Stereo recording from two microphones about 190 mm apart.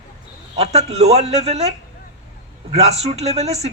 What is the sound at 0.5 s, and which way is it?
Speech, 35° right (ahead or behind).